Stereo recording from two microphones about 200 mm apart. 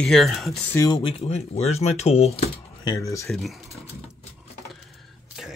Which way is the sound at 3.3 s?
Centre (ahead or behind).